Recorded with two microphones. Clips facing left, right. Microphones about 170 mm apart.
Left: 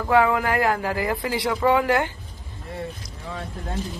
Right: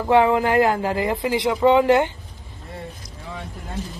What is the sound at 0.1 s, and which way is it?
Speech, 25° right (ahead or behind).